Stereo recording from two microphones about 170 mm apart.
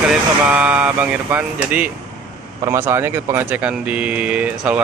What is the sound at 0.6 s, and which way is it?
Speech, 10° right (ahead or behind).